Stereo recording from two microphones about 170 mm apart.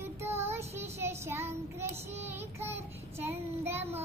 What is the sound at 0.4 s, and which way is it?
Child singing, 15° right (ahead or behind).